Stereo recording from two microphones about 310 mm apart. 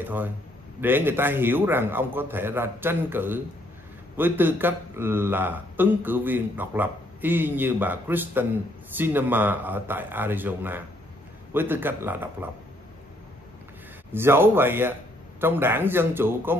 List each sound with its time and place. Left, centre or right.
0.0 s a man's voice: centre
14.1 s speech: centre